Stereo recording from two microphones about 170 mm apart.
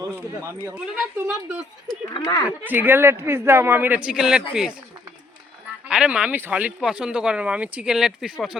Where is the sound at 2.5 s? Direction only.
10° right (ahead or behind).